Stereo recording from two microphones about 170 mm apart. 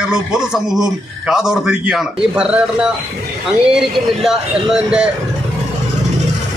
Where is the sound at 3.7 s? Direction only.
5° right (ahead or behind).